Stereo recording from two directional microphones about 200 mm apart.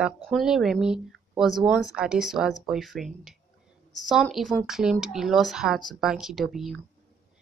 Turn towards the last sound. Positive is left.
turn(degrees=0)  # may be behind; listen again after turning